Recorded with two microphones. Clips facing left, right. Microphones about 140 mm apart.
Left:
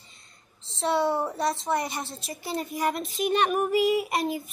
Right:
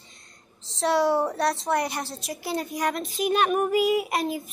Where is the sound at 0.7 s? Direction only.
Centre (ahead or behind).